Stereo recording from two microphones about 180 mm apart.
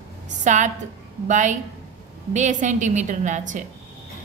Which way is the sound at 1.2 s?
45° right (ahead or behind).